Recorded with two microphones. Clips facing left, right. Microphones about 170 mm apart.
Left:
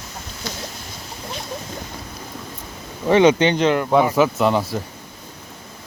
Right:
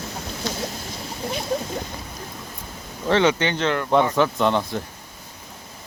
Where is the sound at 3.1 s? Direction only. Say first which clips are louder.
Left 5 dB; 15° left (ahead or behind).